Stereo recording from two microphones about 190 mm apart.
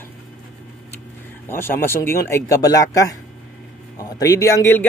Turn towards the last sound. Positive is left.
turn(degrees=15)  # may be behind; listen again after turning